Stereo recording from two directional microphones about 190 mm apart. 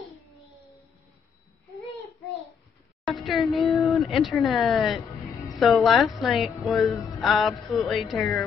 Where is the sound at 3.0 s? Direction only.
Centre (ahead or behind).